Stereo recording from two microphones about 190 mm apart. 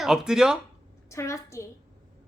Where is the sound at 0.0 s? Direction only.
Centre (ahead or behind).